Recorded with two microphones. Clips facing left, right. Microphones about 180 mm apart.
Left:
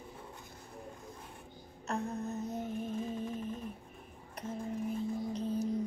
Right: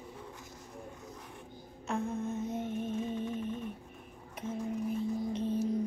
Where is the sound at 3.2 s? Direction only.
35° left (ahead or behind).